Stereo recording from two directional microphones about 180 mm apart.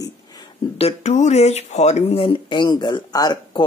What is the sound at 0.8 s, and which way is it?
Speech, 35° left (ahead or behind).